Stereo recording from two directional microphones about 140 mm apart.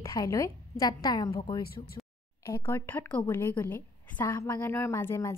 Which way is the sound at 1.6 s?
90° left.